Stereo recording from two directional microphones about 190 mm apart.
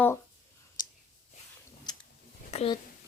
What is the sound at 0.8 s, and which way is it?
Whispering, 20° left (ahead or behind).